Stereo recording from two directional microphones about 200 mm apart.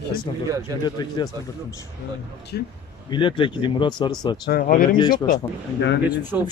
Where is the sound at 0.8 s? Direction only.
20° left (ahead or behind).